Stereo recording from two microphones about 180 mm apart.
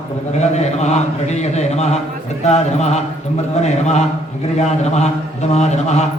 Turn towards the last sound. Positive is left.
turn(degrees=40)  # may be behind; listen again after turning